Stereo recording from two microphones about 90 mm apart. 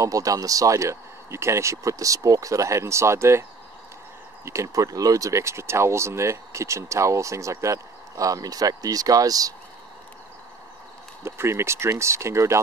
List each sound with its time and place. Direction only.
0.0 s speech: 40° right (ahead or behind)
4.5 s speech: 35° right (ahead or behind)
11.2 s speech: 30° right (ahead or behind)